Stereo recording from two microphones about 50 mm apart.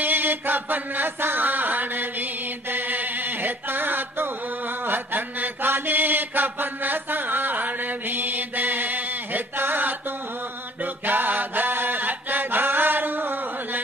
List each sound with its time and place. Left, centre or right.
0.0 s chant: right
2.7 s a sound: right
4.8 s mantra: right